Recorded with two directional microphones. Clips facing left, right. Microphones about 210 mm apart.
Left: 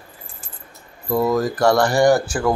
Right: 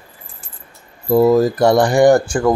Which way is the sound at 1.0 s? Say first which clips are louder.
Right 7 dB; 30° right (ahead or behind).